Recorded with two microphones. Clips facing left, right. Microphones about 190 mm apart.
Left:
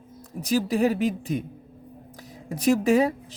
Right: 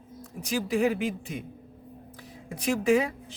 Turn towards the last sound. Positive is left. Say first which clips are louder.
# left 3 dB
turn(degrees=40)  # may be behind; listen again after turning